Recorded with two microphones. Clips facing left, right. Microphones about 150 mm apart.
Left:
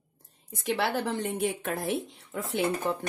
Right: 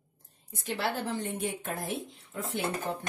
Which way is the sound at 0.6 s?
75° left (ahead or behind).